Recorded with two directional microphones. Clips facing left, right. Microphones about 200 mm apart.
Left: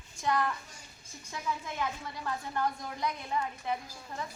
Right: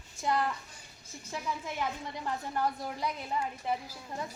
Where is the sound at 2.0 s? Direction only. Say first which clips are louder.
Right 1 dB; 15° right (ahead or behind).